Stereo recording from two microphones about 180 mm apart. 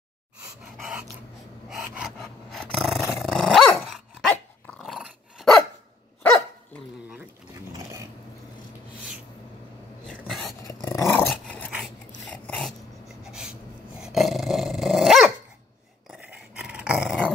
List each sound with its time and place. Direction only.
0.7 s dog: 5° right (ahead or behind)
7.7 s dog: 15° right (ahead or behind)
10.0 s a sound: centre (ahead or behind)
10.7 s dog: 15° left (ahead or behind); by 17.3 s 5° right (ahead or behind)